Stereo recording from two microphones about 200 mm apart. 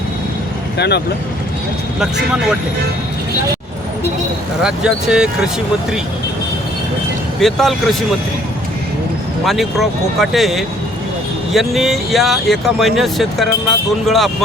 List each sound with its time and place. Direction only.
0.8 s speech: 55° left (ahead or behind)
2.0 s speech: 5° right (ahead or behind)
4.6 s speech: 5° right (ahead or behind)
7.3 s speech: centre (ahead or behind)
9.4 s speech: centre (ahead or behind)